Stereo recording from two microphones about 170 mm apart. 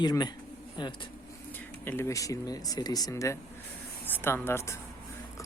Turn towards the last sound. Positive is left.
turn(degrees=15)  # may be behind; listen again after turning